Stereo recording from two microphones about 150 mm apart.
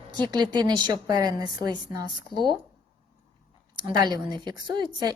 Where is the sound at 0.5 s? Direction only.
25° right (ahead or behind).